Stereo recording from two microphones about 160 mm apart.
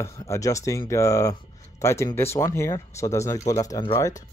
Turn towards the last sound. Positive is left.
turn(degrees=20)  # may be behind; listen again after turning